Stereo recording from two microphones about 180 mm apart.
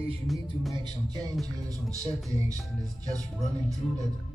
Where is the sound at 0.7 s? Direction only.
25° right (ahead or behind).